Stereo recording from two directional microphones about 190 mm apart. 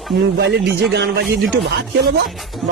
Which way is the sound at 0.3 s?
65° right (ahead or behind).